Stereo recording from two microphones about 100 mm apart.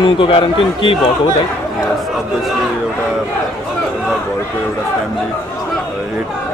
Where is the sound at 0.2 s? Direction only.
60° left (ahead or behind).